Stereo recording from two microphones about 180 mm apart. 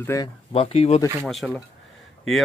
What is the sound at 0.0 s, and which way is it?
Speech, 15° left (ahead or behind).